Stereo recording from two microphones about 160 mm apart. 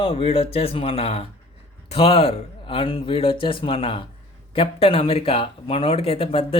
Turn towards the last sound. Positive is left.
turn(degrees=35)  # may be behind; listen again after turning